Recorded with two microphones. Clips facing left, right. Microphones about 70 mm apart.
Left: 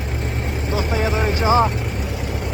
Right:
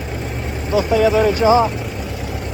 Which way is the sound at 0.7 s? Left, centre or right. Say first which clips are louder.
Right 8 dB; left.